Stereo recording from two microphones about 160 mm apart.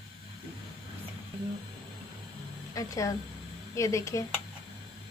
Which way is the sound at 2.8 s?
20° left (ahead or behind).